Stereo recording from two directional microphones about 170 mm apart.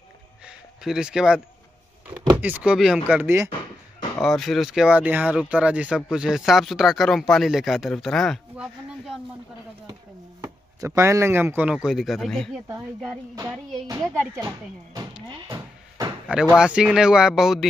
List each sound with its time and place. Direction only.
0.5 s a sound: 5° right (ahead or behind)
2.3 s speech: 10° right (ahead or behind)
4.2 s speech: centre (ahead or behind)
10.4 s speech: 20° right (ahead or behind); by 12.5 s centre (ahead or behind)
15.2 s sheep: 25° right (ahead or behind)
16.3 s speech: 5° right (ahead or behind)